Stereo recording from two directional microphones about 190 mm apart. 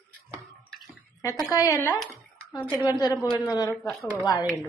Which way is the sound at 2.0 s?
Centre (ahead or behind).